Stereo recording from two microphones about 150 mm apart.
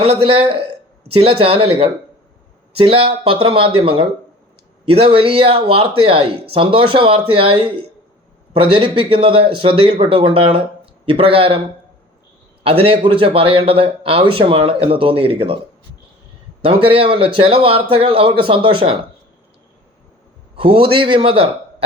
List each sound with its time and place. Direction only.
0.0 s a man's voice: 35° right (ahead or behind)
12.6 s a man's voice: 40° right (ahead or behind)
16.6 s a man's voice: 40° right (ahead or behind)
20.6 s a man's voice: 35° right (ahead or behind)